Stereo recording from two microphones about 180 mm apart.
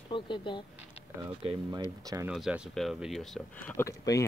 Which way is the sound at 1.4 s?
30° right (ahead or behind).